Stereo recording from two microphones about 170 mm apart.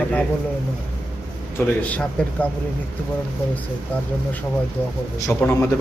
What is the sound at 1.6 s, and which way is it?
Speech, 10° left (ahead or behind).